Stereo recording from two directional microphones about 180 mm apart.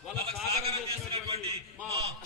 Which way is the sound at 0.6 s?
35° right (ahead or behind).